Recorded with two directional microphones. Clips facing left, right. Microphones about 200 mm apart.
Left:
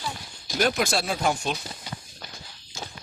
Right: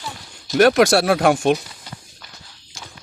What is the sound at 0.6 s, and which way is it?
Speech, 75° right (ahead or behind).